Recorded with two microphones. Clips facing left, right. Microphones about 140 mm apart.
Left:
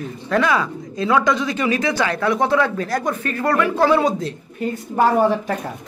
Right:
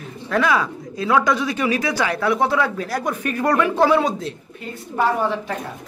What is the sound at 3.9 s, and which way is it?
Speech, centre (ahead or behind).